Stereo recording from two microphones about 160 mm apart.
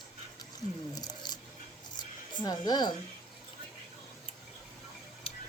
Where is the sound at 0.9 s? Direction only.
25° left (ahead or behind).